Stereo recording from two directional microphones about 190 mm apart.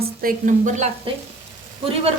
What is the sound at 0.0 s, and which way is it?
Speech, 50° right (ahead or behind).